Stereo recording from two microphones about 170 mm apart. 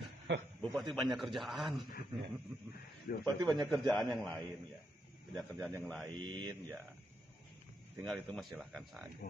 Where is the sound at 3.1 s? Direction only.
60° left (ahead or behind).